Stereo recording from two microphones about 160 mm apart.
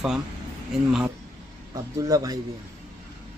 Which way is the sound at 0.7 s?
5° right (ahead or behind).